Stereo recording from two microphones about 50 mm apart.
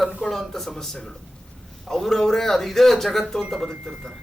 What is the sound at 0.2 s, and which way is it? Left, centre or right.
Speech, centre.